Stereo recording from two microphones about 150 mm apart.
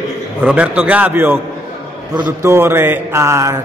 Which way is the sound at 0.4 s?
10° right (ahead or behind).